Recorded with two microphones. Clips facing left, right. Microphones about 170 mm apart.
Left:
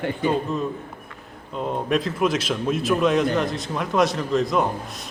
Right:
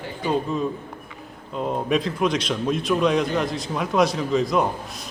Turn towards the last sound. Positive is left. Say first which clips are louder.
# even
turn(degrees=0)  # may be behind; listen again after turning